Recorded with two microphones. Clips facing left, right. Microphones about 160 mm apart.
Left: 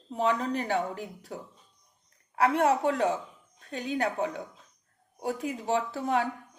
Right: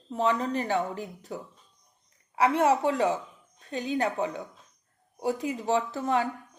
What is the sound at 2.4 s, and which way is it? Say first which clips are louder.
A woman's voice: right 1 dB; centre (ahead or behind).